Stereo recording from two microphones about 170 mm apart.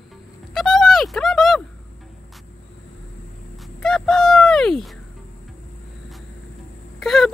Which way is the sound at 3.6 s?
5° left (ahead or behind).